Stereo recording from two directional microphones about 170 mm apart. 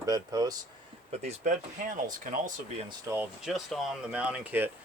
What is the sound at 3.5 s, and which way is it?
Speech, centre (ahead or behind).